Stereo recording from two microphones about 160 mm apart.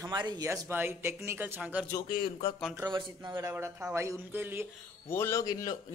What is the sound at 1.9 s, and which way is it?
Speech, 30° left (ahead or behind).